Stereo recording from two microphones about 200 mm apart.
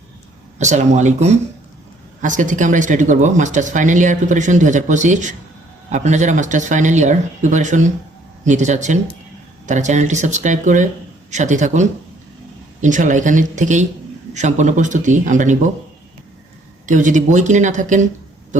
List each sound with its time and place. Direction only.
0.6 s speech: 35° right (ahead or behind)
16.8 s speech: 40° right (ahead or behind)